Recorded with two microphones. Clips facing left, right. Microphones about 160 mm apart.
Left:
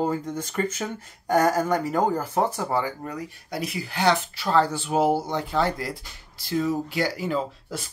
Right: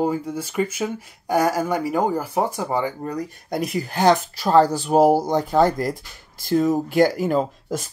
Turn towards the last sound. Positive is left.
turn(degrees=-45)  # may be behind; listen again after turning